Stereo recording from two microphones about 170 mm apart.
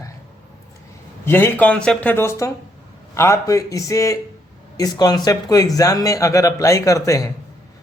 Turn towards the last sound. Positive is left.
turn(degrees=20)  # may be behind; listen again after turning